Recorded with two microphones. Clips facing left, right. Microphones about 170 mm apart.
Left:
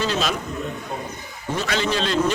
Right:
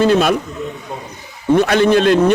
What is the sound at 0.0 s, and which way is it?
Speech, 55° right (ahead or behind).